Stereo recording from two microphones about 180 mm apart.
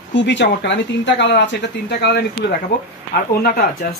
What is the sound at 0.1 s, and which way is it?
Speech, 85° left.